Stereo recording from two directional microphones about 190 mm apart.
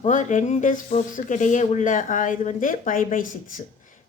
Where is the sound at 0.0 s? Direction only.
40° left (ahead or behind).